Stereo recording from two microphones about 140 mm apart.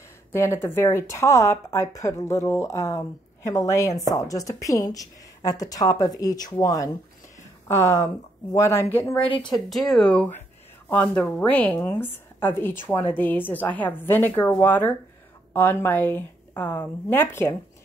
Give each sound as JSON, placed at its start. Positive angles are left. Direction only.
{"t": 0.3, "sound": "a woman's voice", "side_deg": 20}
{"t": 9.2, "sound": "speech", "side_deg": 40}
{"t": 9.5, "sound": "a woman's voice", "side_deg": 0}